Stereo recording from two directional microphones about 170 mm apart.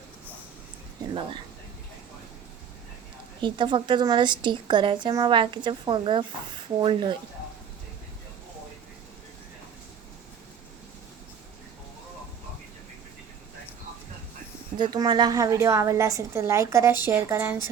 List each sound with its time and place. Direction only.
1.1 s speech: 30° right (ahead or behind)
3.4 s a woman's voice: 30° right (ahead or behind)
14.8 s a woman's voice: 25° right (ahead or behind)